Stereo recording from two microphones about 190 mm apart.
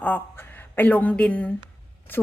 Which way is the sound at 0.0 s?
10° left (ahead or behind).